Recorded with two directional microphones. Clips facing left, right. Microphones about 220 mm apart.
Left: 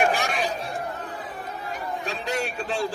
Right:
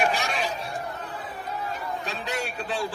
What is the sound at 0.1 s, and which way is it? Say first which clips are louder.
Chatter: left 2 dB; 50° left (ahead or behind).